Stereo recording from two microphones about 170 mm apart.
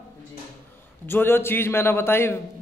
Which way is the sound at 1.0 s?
15° left (ahead or behind).